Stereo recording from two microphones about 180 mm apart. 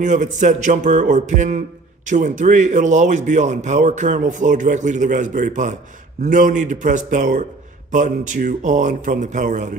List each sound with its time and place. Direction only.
0.0 s a man's voice: 45° right (ahead or behind)